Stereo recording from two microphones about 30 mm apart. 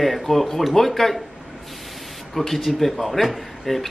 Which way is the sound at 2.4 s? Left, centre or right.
Centre.